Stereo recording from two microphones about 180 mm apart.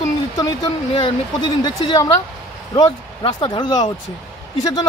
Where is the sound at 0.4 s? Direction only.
25° left (ahead or behind).